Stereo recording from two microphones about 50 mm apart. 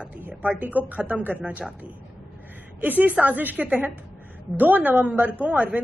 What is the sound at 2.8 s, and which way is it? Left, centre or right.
A woman's voice, right.